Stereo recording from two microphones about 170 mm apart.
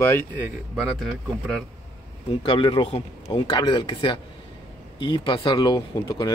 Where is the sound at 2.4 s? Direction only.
30° left (ahead or behind).